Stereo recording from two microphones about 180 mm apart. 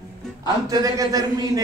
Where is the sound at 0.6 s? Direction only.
20° right (ahead or behind).